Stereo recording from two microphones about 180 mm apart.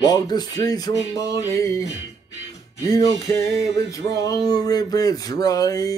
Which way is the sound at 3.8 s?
20° left (ahead or behind).